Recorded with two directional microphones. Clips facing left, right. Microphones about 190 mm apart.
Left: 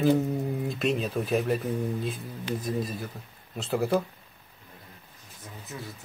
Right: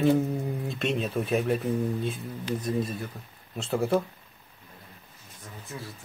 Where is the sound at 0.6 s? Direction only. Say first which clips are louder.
Left 1 dB; centre (ahead or behind).